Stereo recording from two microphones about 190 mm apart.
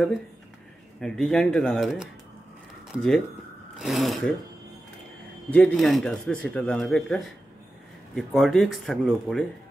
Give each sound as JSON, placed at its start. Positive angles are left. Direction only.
{"t": 1.0, "sound": "speech", "side_deg": 5}
{"t": 5.5, "sound": "speech", "side_deg": 5}